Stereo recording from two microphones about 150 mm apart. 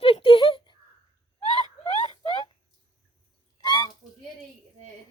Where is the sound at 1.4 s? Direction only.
25° right (ahead or behind).